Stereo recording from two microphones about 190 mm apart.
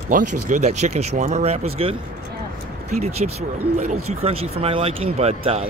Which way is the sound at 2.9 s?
35° right (ahead or behind).